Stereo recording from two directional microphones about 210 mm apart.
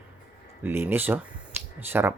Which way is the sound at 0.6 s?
10° right (ahead or behind).